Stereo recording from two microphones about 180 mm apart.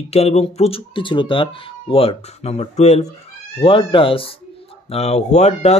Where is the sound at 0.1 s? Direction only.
35° left (ahead or behind).